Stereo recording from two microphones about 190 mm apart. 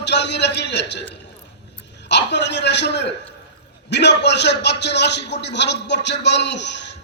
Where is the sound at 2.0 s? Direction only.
65° left (ahead or behind).